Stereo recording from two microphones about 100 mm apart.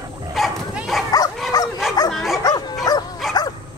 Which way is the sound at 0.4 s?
Centre (ahead or behind).